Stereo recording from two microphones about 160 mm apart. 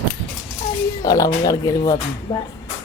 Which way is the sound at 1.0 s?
20° left (ahead or behind).